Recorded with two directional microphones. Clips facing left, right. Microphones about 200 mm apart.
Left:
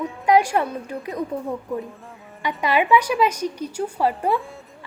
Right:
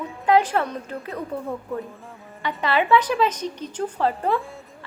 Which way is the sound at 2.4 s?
15° left (ahead or behind).